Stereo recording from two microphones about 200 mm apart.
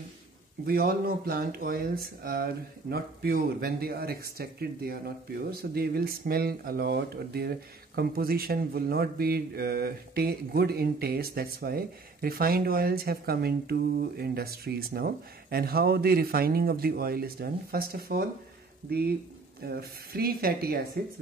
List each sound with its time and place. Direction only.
0.7 s speech: 50° right (ahead or behind)